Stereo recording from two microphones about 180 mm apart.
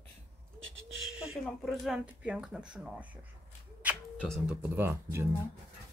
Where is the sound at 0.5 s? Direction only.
90° right.